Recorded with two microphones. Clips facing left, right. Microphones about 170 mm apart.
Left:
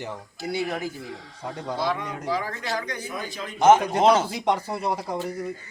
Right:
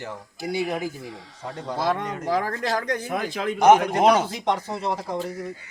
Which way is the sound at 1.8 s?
45° right (ahead or behind).